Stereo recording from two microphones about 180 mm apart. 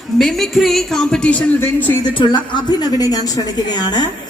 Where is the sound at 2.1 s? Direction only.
25° left (ahead or behind).